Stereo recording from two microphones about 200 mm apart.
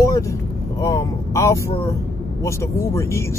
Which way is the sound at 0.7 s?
15° left (ahead or behind).